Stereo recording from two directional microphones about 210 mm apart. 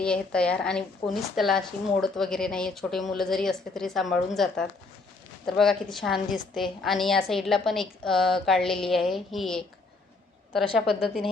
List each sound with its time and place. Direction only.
0.0 s a woman's voice: 5° left (ahead or behind)
10.8 s a woman's voice: centre (ahead or behind)